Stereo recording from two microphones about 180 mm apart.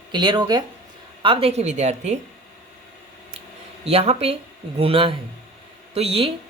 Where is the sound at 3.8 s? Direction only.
35° right (ahead or behind).